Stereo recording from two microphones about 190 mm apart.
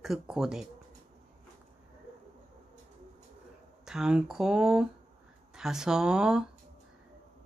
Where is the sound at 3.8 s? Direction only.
5° right (ahead or behind).